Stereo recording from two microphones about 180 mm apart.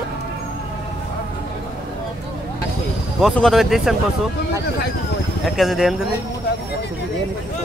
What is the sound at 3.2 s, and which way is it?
Speech, centre (ahead or behind).